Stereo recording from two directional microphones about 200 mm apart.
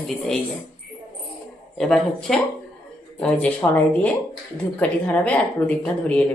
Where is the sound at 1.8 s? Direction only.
Centre (ahead or behind).